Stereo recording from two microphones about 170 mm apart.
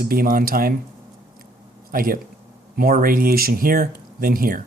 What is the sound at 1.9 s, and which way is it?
Speech, 55° right (ahead or behind).